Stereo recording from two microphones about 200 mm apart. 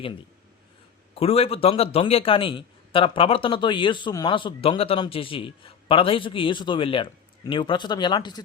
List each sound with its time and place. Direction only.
1.1 s a man's voice: 30° left (ahead or behind)